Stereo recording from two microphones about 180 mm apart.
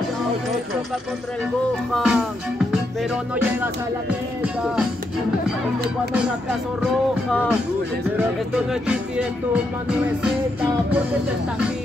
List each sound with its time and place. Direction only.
2.0 s music: centre (ahead or behind)
8.2 s music: 5° right (ahead or behind)